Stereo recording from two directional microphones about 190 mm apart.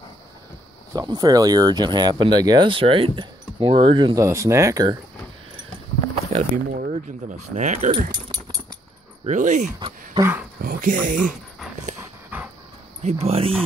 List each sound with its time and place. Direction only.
0.9 s speech: 20° right (ahead or behind)
6.3 s speech: 45° right (ahead or behind)
9.2 s speech: 40° right (ahead or behind)
9.8 s a sound: 25° right (ahead or behind)
10.6 s speech: 50° right (ahead or behind)
12.0 s dog: 10° right (ahead or behind)
13.0 s speech: 30° right (ahead or behind)